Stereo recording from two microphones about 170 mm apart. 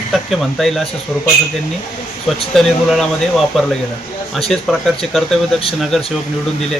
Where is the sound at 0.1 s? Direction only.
Centre (ahead or behind).